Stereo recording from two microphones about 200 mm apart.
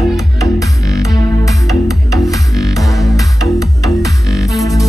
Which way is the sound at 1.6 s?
Centre (ahead or behind).